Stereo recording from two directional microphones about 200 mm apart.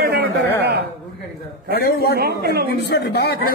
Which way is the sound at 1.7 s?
50° left (ahead or behind).